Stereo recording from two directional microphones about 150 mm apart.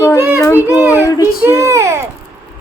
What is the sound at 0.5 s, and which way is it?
Speech, 10° right (ahead or behind).